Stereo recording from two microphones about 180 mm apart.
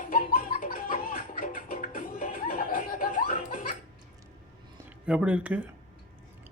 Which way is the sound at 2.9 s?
50° left (ahead or behind).